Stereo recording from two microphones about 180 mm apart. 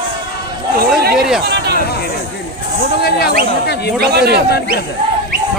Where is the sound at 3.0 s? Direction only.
60° left (ahead or behind).